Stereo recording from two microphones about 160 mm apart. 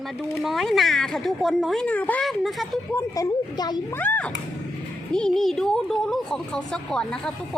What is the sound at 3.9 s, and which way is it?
A child's voice, 10° left (ahead or behind).